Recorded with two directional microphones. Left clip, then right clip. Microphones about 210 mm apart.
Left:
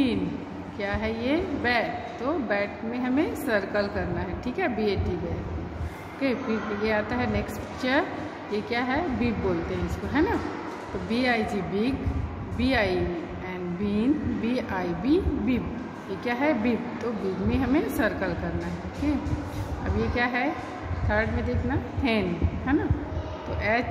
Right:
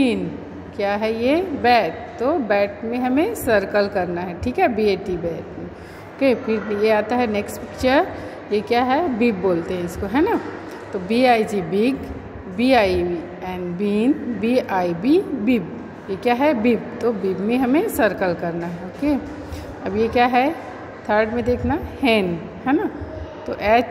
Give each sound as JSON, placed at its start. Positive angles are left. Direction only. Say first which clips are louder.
{"t": 0.7, "sound": "a woman's voice", "louder": "right 9 dB", "side_deg": -35}
{"t": 6.1, "sound": "a woman's voice", "louder": "right 9 dB", "side_deg": -35}
{"t": 11.1, "sound": "a woman's voice", "louder": "right 10 dB", "side_deg": -35}